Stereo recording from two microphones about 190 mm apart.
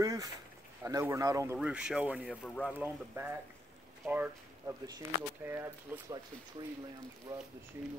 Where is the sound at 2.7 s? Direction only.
10° right (ahead or behind).